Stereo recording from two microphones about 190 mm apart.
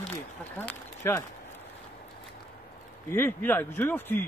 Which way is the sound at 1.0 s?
15° left (ahead or behind).